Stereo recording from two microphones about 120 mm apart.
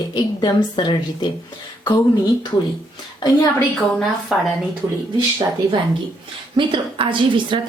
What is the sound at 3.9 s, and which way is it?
Speech, centre (ahead or behind).